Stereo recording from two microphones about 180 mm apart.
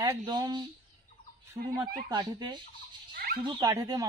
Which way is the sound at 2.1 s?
25° right (ahead or behind).